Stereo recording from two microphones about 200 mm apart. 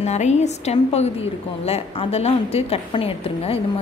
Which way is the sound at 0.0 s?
35° left (ahead or behind).